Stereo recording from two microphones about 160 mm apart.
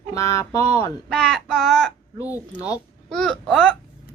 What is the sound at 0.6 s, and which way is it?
Speech, 40° right (ahead or behind).